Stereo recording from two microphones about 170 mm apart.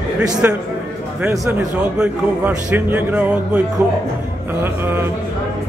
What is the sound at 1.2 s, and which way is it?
Speech, 20° right (ahead or behind).